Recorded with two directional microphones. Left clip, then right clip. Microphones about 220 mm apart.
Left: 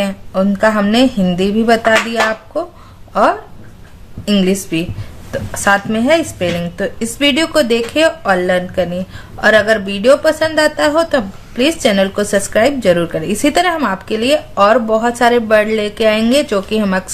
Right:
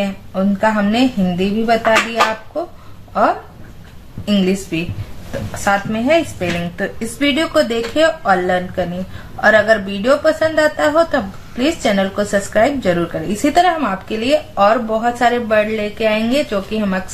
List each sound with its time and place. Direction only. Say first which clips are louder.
0.0 s speech: left 4 dB; 45° left (ahead or behind)
3.1 s speech: left 3 dB; 45° left (ahead or behind)